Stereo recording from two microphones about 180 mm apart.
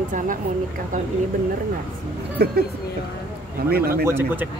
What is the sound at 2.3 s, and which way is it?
Speech, 60° right (ahead or behind).